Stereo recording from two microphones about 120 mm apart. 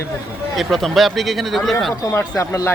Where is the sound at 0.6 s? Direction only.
Centre (ahead or behind).